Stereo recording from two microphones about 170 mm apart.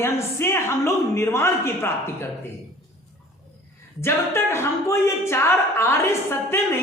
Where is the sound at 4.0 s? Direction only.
15° left (ahead or behind).